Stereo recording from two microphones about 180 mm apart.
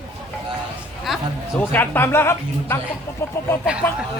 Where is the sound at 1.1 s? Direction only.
Centre (ahead or behind).